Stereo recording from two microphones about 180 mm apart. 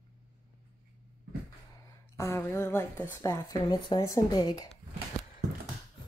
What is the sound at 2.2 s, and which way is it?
Speech, 15° left (ahead or behind).